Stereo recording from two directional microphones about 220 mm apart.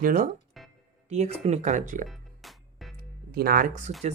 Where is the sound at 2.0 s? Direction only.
Centre (ahead or behind).